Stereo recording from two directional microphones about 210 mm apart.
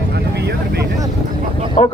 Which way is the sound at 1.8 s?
35° left (ahead or behind).